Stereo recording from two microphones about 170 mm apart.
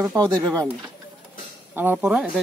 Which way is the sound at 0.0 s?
15° right (ahead or behind).